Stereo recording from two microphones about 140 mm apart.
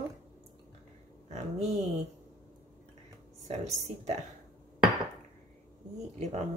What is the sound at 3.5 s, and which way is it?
Speech, 55° right (ahead or behind).